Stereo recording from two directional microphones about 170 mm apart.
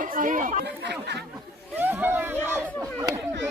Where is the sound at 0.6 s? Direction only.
80° right.